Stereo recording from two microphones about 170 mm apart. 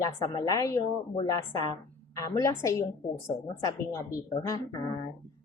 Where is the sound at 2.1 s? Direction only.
20° left (ahead or behind).